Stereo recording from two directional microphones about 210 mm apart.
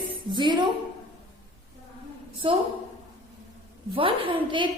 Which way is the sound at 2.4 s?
25° right (ahead or behind).